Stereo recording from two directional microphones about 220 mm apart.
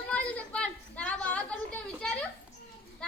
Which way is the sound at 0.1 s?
5° left (ahead or behind).